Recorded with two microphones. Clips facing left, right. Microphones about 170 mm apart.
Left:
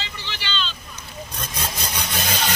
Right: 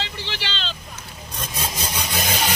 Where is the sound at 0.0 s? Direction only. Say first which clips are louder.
Right 3 dB; 90° right.